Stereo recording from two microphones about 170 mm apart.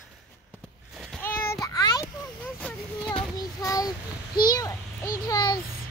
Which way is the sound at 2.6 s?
10° left (ahead or behind).